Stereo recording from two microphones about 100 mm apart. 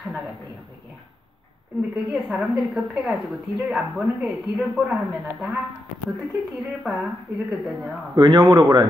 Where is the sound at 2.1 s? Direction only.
5° right (ahead or behind).